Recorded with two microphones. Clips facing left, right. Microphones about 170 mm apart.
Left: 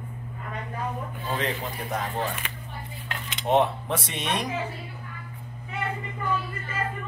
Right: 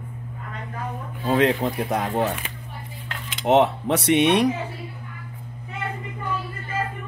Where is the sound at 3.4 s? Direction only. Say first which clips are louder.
Right 5 dB; 80° right.